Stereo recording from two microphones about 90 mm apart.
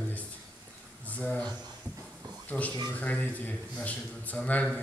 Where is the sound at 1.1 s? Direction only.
15° left (ahead or behind).